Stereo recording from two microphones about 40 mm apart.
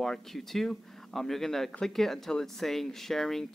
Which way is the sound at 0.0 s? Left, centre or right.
Centre.